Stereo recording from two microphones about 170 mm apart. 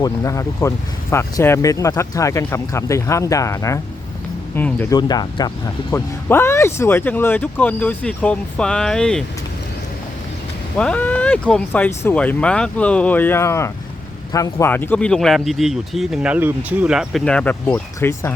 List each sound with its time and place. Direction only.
0.0 s speech: 20° left (ahead or behind)
4.9 s speech: 25° left (ahead or behind); by 9.2 s 5° left (ahead or behind)
10.8 s speech: 10° left (ahead or behind)